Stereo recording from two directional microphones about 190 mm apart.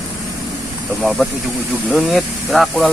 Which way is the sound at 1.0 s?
Centre (ahead or behind).